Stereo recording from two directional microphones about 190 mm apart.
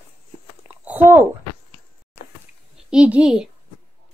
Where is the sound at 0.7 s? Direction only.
10° right (ahead or behind).